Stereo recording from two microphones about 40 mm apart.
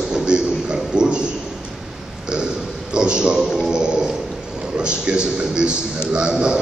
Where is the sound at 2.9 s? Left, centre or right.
Right.